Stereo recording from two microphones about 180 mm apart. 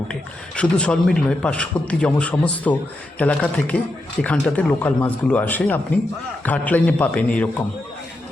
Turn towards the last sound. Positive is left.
turn(degrees=10)  # may be behind; listen again after turning